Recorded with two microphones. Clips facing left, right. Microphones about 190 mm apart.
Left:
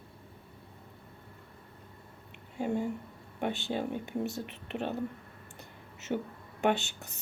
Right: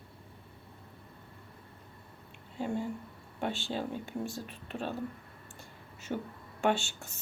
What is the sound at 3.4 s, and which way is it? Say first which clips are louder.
A woman's voice: left 2 dB; 20° left (ahead or behind).